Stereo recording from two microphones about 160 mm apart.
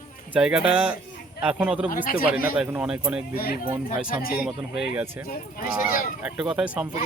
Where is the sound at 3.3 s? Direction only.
70° left (ahead or behind).